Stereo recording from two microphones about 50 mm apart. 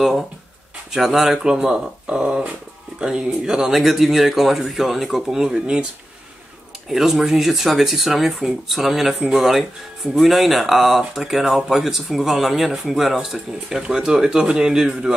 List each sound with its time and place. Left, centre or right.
0.9 s speech: centre
6.9 s speech: centre